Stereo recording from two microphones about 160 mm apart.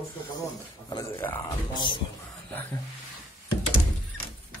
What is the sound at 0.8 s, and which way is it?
Speech, 25° left (ahead or behind).